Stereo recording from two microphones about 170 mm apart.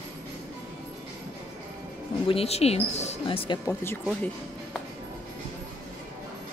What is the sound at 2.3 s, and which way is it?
Speech, 35° left (ahead or behind).